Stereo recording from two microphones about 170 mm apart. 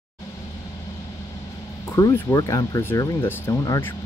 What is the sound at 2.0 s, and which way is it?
Speech, 20° left (ahead or behind).